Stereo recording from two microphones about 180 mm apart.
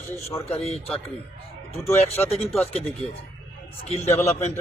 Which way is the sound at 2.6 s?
35° left (ahead or behind).